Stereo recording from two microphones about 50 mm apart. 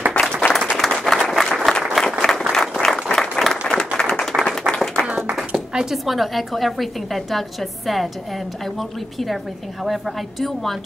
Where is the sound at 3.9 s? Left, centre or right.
Centre.